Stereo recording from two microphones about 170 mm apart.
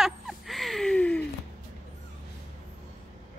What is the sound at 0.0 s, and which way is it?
Gasp, centre (ahead or behind).